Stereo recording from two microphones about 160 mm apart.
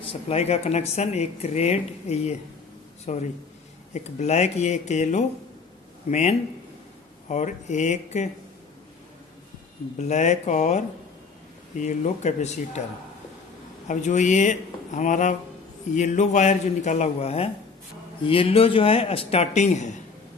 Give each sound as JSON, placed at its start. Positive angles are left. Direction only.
{"t": 0.0, "sound": "speech", "side_deg": 40}
{"t": 9.9, "sound": "speech", "side_deg": 45}
{"t": 11.8, "sound": "speech", "side_deg": 50}
{"t": 13.8, "sound": "a man's voice", "side_deg": 50}